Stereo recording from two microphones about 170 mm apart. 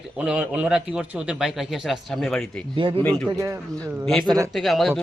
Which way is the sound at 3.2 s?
15° right (ahead or behind).